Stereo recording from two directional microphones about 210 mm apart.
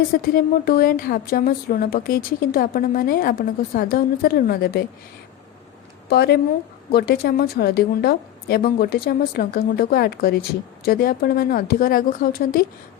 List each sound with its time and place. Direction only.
0.1 s speech: 45° left (ahead or behind)
6.1 s speech: 50° left (ahead or behind)